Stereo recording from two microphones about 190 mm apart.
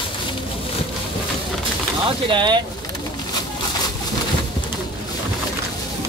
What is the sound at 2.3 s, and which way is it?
Speech, 25° right (ahead or behind).